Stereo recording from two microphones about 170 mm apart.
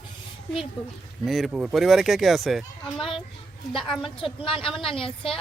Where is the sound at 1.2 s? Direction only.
Centre (ahead or behind).